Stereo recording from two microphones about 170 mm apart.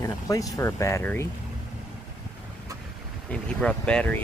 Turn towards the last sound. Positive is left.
turn(degrees=5)  # may be behind; listen again after turning